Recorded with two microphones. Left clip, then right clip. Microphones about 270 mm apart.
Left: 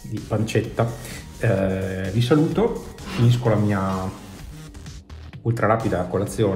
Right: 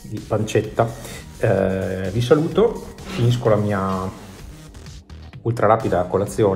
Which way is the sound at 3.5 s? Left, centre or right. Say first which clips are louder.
Right 5 dB; centre.